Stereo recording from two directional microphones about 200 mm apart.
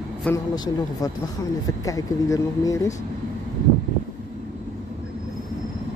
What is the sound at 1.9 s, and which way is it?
Speech, 15° left (ahead or behind).